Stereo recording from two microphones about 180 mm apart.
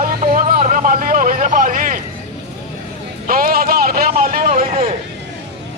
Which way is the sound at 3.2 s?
55° right (ahead or behind).